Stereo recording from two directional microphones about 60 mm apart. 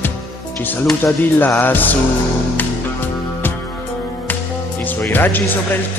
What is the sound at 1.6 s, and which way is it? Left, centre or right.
Music, left.